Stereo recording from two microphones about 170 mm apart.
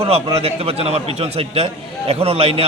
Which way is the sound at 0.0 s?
35° right (ahead or behind).